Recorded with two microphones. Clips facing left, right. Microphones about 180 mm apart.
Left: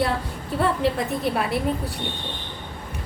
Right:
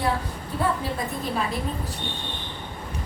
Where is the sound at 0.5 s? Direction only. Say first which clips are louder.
Left 3 dB; 70° left (ahead or behind).